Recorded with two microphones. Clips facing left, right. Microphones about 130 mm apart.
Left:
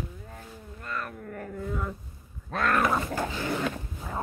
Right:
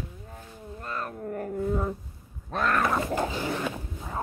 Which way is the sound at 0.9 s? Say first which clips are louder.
Right 2 dB; 35° right (ahead or behind).